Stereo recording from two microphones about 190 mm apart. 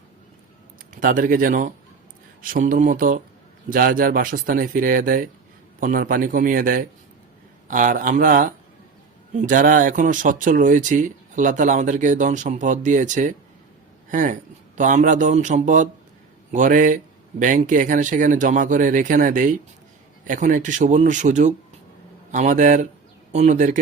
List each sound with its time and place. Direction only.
0.9 s a man's voice: 45° right (ahead or behind)